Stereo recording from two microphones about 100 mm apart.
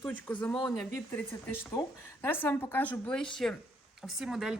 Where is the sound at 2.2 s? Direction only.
20° left (ahead or behind).